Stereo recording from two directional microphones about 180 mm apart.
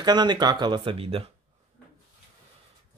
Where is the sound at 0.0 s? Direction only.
25° right (ahead or behind).